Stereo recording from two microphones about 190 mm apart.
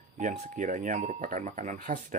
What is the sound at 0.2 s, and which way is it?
Speech, 40° right (ahead or behind).